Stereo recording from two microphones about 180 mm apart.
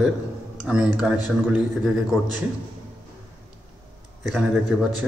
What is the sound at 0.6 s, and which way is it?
A man's voice, 5° right (ahead or behind).